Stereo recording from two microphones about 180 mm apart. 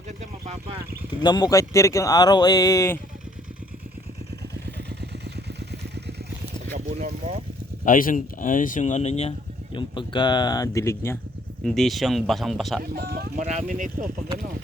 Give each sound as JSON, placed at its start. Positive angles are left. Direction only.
{"t": 0.2, "sound": "speech", "side_deg": -35}
{"t": 1.2, "sound": "speech", "side_deg": 20}
{"t": 4.6, "sound": "vehicle", "side_deg": -70}
{"t": 6.7, "sound": "speech", "side_deg": -40}
{"t": 7.9, "sound": "speech", "side_deg": 50}
{"t": 9.7, "sound": "speech", "side_deg": 25}
{"t": 11.6, "sound": "speech", "side_deg": 0}
{"t": 12.8, "sound": "speech", "side_deg": -55}
{"t": 13.5, "sound": "speech", "side_deg": -40}